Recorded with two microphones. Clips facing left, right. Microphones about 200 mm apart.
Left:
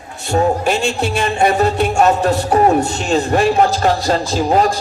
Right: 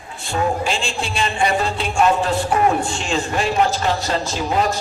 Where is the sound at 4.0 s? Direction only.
35° left (ahead or behind).